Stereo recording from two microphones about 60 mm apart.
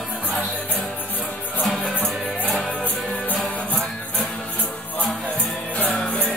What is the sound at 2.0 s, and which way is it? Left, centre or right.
Music, centre.